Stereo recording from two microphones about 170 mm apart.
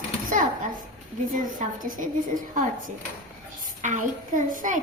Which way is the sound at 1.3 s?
50° right (ahead or behind).